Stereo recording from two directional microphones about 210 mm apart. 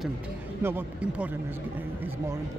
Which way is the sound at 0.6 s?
10° right (ahead or behind).